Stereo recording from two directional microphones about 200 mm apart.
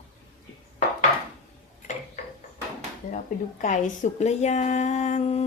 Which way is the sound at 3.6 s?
35° left (ahead or behind).